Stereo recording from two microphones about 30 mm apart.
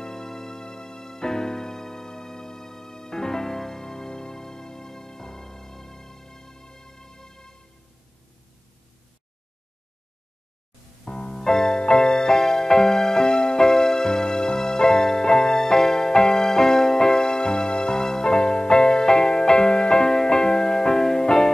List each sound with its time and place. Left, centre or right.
0.0 s music: centre
11.1 s music: left
13.6 s music: centre